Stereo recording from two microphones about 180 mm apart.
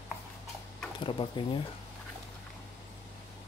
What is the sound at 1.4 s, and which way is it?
Speech, 25° left (ahead or behind).